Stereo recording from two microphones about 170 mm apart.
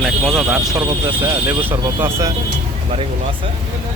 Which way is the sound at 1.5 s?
15° right (ahead or behind).